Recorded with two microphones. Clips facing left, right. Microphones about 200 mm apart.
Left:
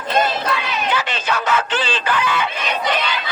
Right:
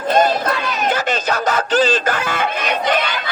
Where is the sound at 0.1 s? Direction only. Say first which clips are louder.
Right 4 dB; 45° right (ahead or behind).